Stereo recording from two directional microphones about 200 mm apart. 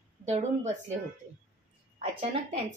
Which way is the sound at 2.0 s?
30° right (ahead or behind).